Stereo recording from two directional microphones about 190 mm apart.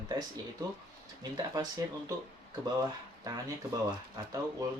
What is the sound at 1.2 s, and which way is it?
Speech, 20° right (ahead or behind).